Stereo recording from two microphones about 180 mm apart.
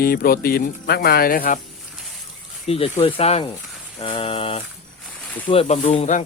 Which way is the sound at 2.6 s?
35° left (ahead or behind).